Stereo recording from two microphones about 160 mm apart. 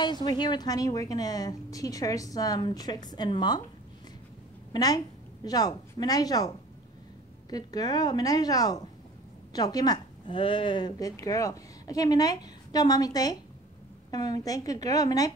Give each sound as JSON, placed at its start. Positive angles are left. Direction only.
{"t": 0.0, "sound": "speech", "side_deg": 25}
{"t": 4.7, "sound": "speech", "side_deg": 25}